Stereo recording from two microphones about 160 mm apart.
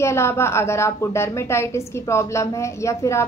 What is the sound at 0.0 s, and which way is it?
A woman's voice, 15° left (ahead or behind).